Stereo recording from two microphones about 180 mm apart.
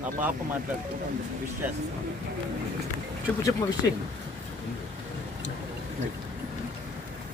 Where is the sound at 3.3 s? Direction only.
10° left (ahead or behind).